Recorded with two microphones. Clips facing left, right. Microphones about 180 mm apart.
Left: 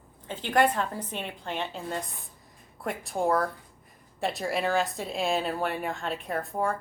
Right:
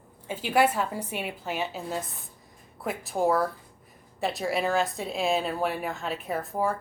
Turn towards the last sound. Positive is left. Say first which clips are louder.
# right 1 dB
turn(degrees=0)  # may be behind; listen again after turning